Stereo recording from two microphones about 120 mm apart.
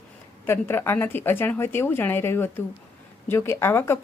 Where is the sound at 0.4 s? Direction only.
20° left (ahead or behind).